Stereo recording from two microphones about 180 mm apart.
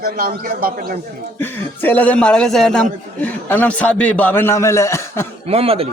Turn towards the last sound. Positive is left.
turn(degrees=-30)  # may be behind; listen again after turning